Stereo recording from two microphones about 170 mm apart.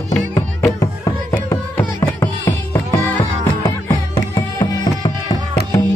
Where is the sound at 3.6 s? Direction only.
20° left (ahead or behind).